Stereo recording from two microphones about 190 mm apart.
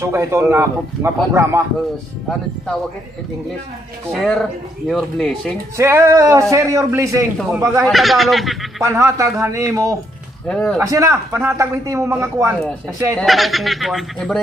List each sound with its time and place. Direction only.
0.0 s a man's voice: 15° right (ahead or behind)
4.1 s speech: centre (ahead or behind)
5.8 s a man's voice: 15° right (ahead or behind)
7.8 s speech: centre (ahead or behind)
8.8 s a man's voice: 15° right (ahead or behind)
10.5 s speech: 5° left (ahead or behind)
10.8 s a man's voice: 15° right (ahead or behind)
13.2 s speech: centre (ahead or behind)